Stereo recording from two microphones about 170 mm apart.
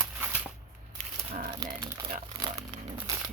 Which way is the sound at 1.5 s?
25° right (ahead or behind).